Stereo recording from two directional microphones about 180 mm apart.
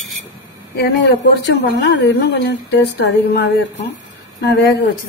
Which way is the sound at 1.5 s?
65° left (ahead or behind).